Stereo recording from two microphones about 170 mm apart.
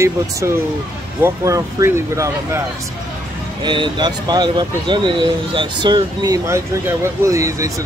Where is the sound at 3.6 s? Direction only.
30° right (ahead or behind).